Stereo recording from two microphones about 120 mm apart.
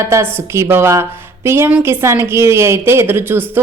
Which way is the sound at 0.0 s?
25° right (ahead or behind).